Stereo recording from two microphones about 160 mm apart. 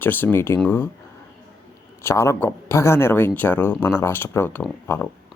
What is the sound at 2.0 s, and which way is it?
Speech, 15° left (ahead or behind).